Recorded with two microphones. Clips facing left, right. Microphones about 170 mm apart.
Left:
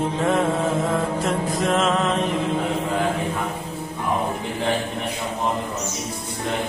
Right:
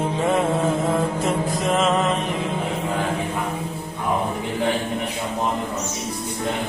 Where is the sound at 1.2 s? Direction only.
Centre (ahead or behind).